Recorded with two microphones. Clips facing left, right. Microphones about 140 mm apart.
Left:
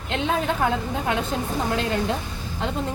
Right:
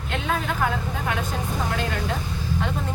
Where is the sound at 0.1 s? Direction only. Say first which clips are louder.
Left 2 dB; 25° left (ahead or behind).